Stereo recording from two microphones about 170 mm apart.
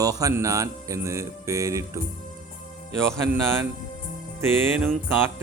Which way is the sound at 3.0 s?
15° right (ahead or behind).